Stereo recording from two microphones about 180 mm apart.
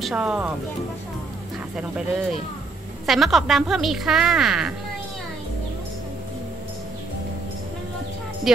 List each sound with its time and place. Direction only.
0.0 s speech: 5° right (ahead or behind)
1.8 s a woman's voice: 5° right (ahead or behind)